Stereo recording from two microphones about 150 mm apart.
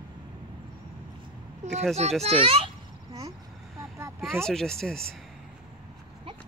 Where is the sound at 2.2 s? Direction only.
40° right (ahead or behind).